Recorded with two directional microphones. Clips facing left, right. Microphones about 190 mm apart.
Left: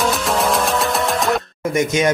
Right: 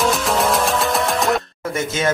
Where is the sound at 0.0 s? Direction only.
Centre (ahead or behind).